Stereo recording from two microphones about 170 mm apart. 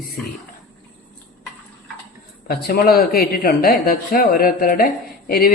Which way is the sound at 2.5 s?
65° left (ahead or behind).